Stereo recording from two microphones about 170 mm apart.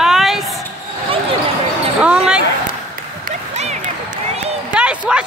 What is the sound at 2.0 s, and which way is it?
Basketball bounce, 5° right (ahead or behind).